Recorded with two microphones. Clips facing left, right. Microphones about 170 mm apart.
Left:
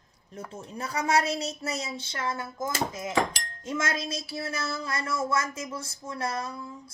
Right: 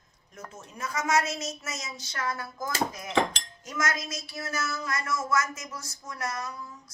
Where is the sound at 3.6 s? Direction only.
30° left (ahead or behind).